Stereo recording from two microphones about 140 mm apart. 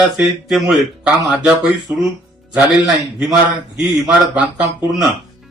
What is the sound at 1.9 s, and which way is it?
Speech, 15° right (ahead or behind).